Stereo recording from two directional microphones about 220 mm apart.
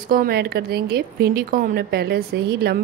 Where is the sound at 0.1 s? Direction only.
45° right (ahead or behind).